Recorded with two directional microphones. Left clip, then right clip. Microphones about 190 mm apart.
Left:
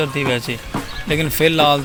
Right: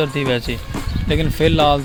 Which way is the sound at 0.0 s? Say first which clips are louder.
Even; 20° right (ahead or behind).